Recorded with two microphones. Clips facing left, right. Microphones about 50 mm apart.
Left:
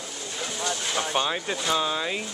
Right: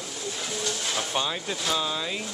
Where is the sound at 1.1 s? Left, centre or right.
Centre.